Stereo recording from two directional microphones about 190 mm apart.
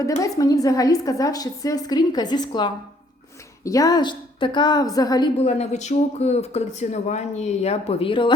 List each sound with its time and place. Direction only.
0.2 s a woman's voice: 20° left (ahead or behind)
5.4 s speech: 35° left (ahead or behind)